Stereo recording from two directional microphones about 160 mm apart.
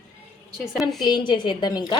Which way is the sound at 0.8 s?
Centre (ahead or behind).